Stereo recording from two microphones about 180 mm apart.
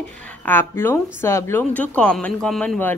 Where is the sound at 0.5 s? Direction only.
10° left (ahead or behind).